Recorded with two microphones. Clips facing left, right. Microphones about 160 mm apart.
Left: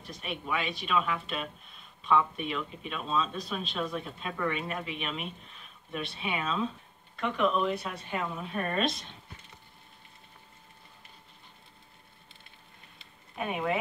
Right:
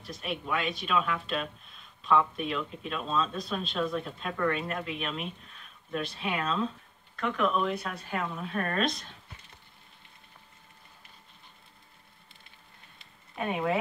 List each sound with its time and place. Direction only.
0.0 s speech: centre (ahead or behind)
13.4 s speech: centre (ahead or behind)